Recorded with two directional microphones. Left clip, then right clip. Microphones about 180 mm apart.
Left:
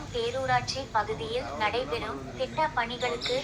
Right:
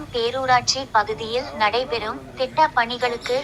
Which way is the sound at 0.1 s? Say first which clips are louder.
Right 8 dB; 30° right (ahead or behind).